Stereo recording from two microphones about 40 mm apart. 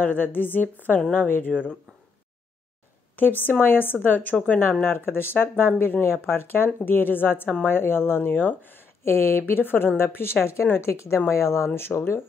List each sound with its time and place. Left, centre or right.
0.0 s a woman's voice: left
3.2 s a woman's voice: left
4.8 s speech: left
9.0 s speech: left
9.5 s a woman's voice: left